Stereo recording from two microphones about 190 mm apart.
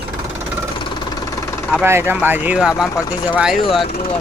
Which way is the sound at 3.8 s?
30° left (ahead or behind).